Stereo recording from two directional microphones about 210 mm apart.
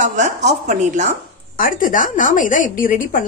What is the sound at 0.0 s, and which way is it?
A woman's voice, 35° right (ahead or behind).